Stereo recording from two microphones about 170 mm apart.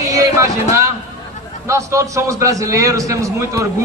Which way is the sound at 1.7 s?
15° right (ahead or behind).